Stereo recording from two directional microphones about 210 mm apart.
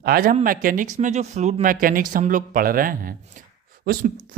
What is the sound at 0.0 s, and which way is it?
Speech, 45° right (ahead or behind).